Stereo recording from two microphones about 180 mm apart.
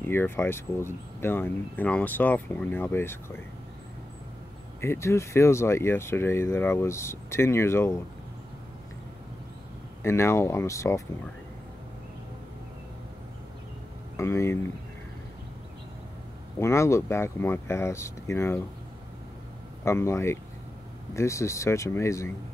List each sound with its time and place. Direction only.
0.0 s speech: 10° left (ahead or behind)
4.8 s speech: 15° left (ahead or behind)
10.0 s speech: 15° left (ahead or behind)
14.1 s speech: 15° left (ahead or behind)
16.5 s speech: 15° left (ahead or behind)
19.8 s speech: 15° left (ahead or behind)